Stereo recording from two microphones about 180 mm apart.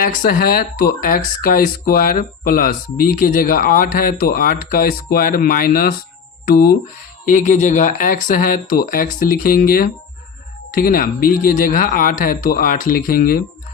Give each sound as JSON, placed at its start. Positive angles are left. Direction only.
{"t": 0.0, "sound": "speech", "side_deg": 50}
{"t": 7.3, "sound": "speech", "side_deg": 45}